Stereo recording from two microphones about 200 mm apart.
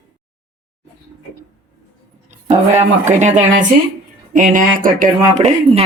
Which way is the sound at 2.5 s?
35° right (ahead or behind).